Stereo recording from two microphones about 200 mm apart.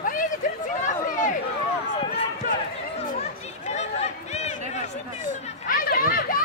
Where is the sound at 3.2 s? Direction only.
35° left (ahead or behind).